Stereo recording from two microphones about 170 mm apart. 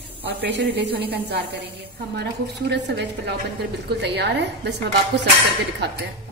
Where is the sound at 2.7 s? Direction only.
75° right (ahead or behind).